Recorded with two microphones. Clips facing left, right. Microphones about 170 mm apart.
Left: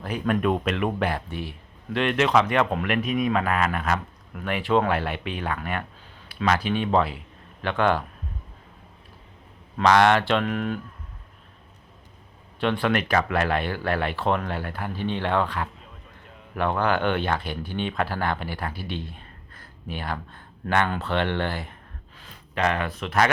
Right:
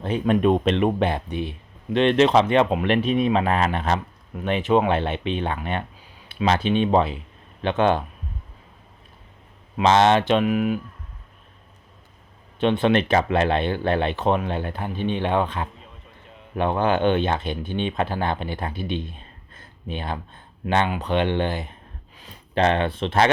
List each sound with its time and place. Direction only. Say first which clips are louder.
0.0 s speech: right 4 dB; 25° right (ahead or behind)
9.7 s speech: right 1 dB; 20° right (ahead or behind)
12.5 s speech: right 4 dB; 20° right (ahead or behind)